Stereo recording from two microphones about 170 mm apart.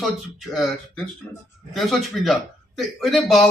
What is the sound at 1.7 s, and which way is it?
Speech, centre (ahead or behind).